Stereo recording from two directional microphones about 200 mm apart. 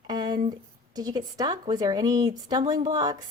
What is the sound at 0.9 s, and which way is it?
A woman's voice, 20° right (ahead or behind).